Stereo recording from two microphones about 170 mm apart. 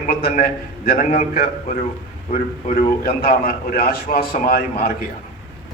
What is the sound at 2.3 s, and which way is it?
A man's voice, 55° left (ahead or behind).